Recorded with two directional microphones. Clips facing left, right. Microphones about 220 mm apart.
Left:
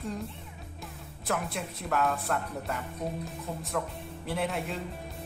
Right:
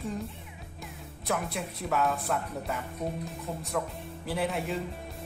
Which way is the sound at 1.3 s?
Centre (ahead or behind).